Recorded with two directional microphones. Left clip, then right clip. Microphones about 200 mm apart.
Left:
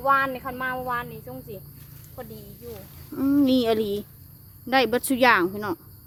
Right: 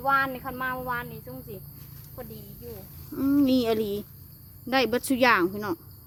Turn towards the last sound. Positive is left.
turn(degrees=0)  # may be behind; listen again after turning